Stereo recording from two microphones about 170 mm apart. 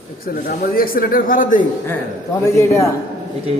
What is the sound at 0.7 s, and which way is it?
Speech, 60° left (ahead or behind).